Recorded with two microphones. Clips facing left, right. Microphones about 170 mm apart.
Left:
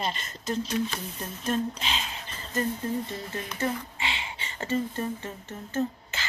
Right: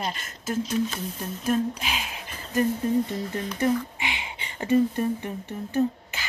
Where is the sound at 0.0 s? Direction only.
5° right (ahead or behind).